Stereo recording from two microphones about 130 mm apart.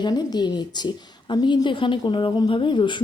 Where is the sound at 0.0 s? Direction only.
30° left (ahead or behind).